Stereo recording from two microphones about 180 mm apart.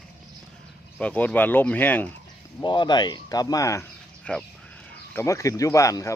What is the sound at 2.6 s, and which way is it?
Speech, 25° left (ahead or behind).